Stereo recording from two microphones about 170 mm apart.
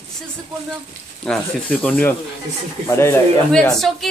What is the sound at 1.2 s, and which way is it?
Speech, 5° left (ahead or behind).